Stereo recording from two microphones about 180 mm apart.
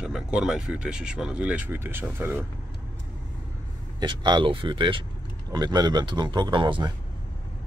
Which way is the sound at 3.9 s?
25° right (ahead or behind).